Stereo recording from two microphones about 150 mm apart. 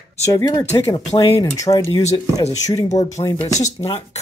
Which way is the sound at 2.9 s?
50° left (ahead or behind).